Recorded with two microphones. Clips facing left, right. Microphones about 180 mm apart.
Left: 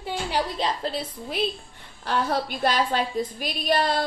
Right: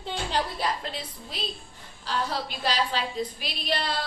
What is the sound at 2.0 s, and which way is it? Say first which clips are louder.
A woman's voice: left 5 dB; 50° left (ahead or behind).